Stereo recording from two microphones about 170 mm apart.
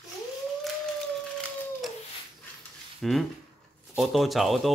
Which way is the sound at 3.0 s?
Centre (ahead or behind).